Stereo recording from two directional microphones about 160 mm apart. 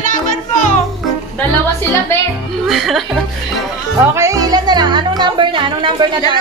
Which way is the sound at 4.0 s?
15° right (ahead or behind).